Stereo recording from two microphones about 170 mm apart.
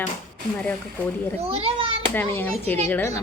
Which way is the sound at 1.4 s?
35° right (ahead or behind).